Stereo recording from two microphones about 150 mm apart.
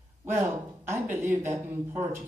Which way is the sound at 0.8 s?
15° right (ahead or behind).